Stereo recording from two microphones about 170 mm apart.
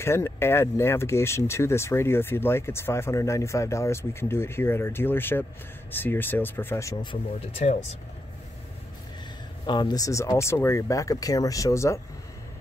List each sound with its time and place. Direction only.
0.0 s speech: 15° left (ahead or behind)
9.7 s speech: 25° left (ahead or behind)